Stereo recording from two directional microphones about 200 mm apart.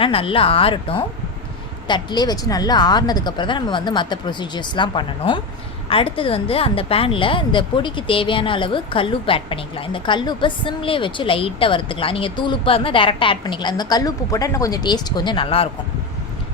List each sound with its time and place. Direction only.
0.0 s a woman's voice: 25° left (ahead or behind)